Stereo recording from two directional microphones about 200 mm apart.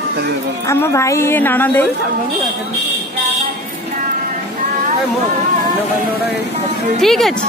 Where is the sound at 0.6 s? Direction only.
15° left (ahead or behind).